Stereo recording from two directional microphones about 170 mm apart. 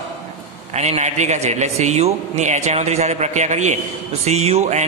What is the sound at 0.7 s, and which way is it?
A man's voice, 40° right (ahead or behind).